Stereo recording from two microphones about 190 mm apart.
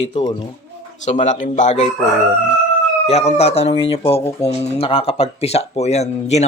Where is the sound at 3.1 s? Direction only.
35° left (ahead or behind).